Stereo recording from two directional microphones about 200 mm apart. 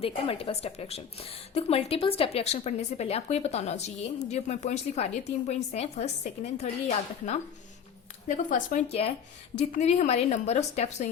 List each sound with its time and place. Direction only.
0.0 s a woman's voice: 30° left (ahead or behind)
8.4 s a woman's voice: 40° left (ahead or behind)